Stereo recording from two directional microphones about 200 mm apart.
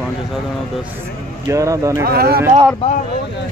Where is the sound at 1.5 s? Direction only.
15° right (ahead or behind).